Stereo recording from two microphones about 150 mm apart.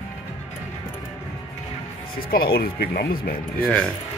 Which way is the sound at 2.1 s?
90° left.